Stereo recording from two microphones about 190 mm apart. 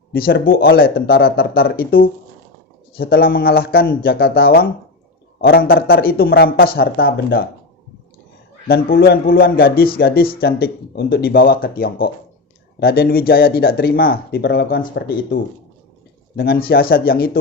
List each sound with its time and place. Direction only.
0.1 s speech: 55° left (ahead or behind)
8.6 s speech: 50° left (ahead or behind)